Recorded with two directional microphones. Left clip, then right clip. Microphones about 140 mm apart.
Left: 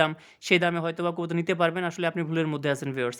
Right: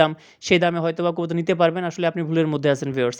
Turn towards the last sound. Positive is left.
turn(degrees=-35)  # may be behind; listen again after turning